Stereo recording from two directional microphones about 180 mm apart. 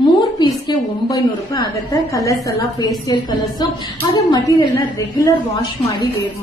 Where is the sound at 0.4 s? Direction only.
20° left (ahead or behind).